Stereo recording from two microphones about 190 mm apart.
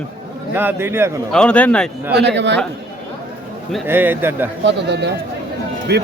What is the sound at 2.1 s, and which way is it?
Speech, 65° right (ahead or behind).